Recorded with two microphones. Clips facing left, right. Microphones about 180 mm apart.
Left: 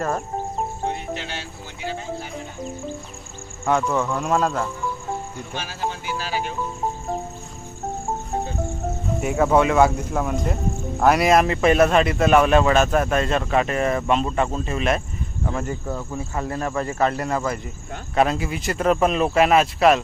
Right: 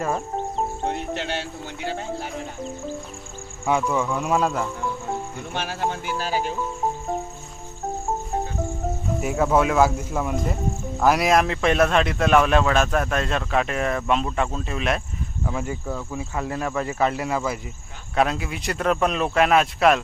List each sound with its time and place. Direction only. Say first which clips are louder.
1.1 s speech: right 3 dB; 65° right (ahead or behind)
3.7 s speech: left 1 dB; 10° right (ahead or behind)
5.5 s speech: right 2 dB; 55° right (ahead or behind)
9.2 s a man's voice: left 2 dB; centre (ahead or behind)